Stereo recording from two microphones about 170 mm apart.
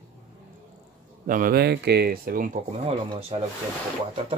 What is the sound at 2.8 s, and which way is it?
Speech, 35° right (ahead or behind).